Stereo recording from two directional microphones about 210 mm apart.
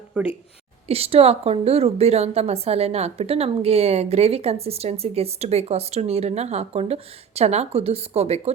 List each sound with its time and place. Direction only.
0.1 s speech: 5° right (ahead or behind)
0.9 s a woman's voice: 30° right (ahead or behind)